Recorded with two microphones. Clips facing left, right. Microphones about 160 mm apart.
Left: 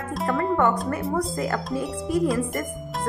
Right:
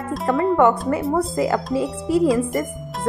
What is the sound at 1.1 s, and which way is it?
Speech, 20° right (ahead or behind).